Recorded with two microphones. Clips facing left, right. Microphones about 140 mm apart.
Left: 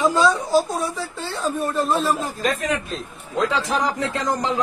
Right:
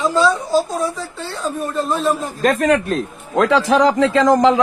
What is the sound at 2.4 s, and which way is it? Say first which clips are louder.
A man's voice: right 10 dB; 65° right (ahead or behind).